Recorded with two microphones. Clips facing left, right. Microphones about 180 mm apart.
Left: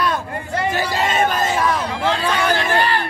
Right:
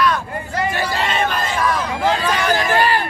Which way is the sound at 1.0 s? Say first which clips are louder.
Left 3 dB; 45° left (ahead or behind).